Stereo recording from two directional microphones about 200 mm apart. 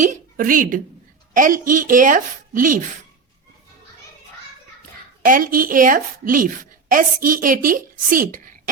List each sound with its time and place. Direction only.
0.0 s a sound: 40° right (ahead or behind)
1.3 s a woman's voice: 40° right (ahead or behind)
5.2 s a woman's voice: 45° right (ahead or behind)